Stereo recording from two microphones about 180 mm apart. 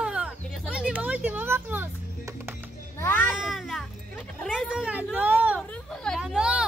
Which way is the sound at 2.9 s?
15° left (ahead or behind).